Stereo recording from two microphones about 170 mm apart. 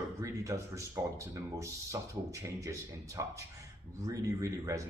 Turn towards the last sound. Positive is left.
turn(degrees=-20)  # may be behind; listen again after turning